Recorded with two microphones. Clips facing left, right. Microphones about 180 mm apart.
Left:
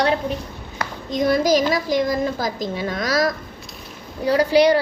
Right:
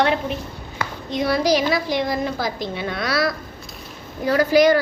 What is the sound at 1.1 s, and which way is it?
A woman's voice, 45° left (ahead or behind).